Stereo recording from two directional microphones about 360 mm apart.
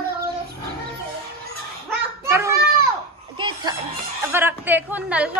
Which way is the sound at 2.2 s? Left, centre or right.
Centre.